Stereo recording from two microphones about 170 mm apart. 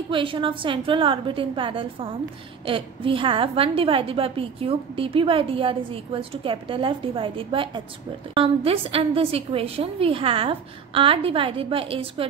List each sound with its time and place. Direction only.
0.1 s a woman's voice: 30° right (ahead or behind)